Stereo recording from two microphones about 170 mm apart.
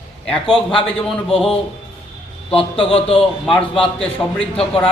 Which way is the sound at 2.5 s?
30° left (ahead or behind).